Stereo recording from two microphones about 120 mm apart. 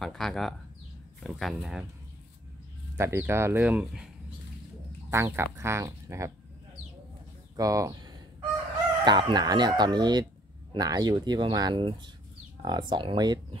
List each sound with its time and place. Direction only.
0.0 s speech: centre (ahead or behind)
3.0 s speech: 20° right (ahead or behind)
3.6 s speech: 10° right (ahead or behind)
5.1 s speech: 20° right (ahead or behind)
7.5 s fowl: 30° right (ahead or behind)
9.0 s speech: 35° right (ahead or behind)